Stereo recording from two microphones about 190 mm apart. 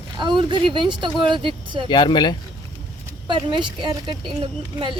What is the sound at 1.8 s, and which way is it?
Speech, 25° left (ahead or behind).